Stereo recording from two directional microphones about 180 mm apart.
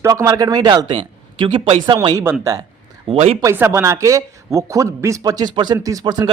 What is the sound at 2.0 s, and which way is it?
Speech, 15° right (ahead or behind).